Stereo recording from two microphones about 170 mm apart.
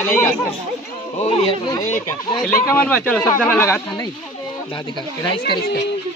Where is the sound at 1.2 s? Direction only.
35° left (ahead or behind).